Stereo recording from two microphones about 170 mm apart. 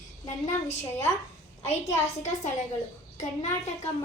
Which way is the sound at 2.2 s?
45° left (ahead or behind).